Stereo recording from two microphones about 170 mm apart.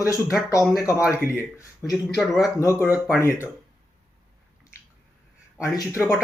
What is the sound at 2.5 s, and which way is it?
Speech, 15° left (ahead or behind).